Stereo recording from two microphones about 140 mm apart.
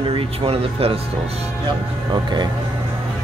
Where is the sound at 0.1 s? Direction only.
40° right (ahead or behind).